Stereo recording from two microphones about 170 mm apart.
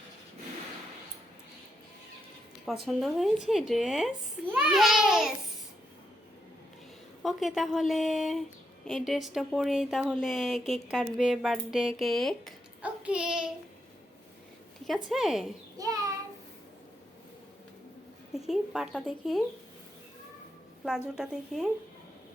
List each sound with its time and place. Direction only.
2.6 s speech: centre (ahead or behind)
7.2 s speech: centre (ahead or behind)
14.8 s speech: centre (ahead or behind)
15.8 s child singing: 20° right (ahead or behind)
18.3 s speech: 5° right (ahead or behind)
21.2 s speech: centre (ahead or behind)